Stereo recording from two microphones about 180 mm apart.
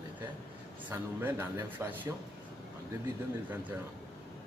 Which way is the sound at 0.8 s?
10° right (ahead or behind).